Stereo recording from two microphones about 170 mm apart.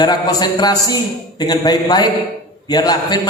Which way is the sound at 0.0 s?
25° left (ahead or behind).